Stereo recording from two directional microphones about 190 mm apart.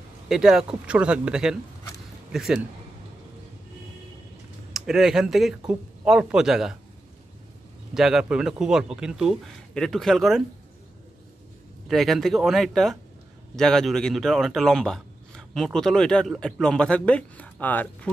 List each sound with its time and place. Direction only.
0.3 s speech: 5° right (ahead or behind)
4.7 s speech: centre (ahead or behind)
7.9 s speech: centre (ahead or behind)
11.9 s speech: centre (ahead or behind)